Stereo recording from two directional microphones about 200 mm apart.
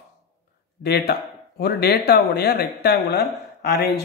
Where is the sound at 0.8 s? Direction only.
50° left (ahead or behind).